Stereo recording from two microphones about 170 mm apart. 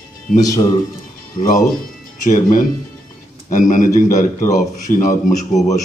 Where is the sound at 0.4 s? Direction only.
20° left (ahead or behind).